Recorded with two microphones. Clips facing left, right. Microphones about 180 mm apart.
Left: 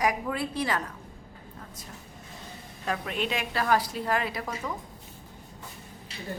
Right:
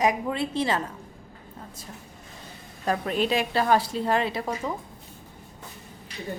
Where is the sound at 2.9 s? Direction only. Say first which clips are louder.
Right 6 dB; 35° right (ahead or behind).